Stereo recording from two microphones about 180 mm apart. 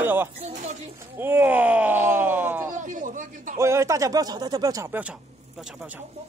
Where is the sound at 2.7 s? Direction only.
45° right (ahead or behind).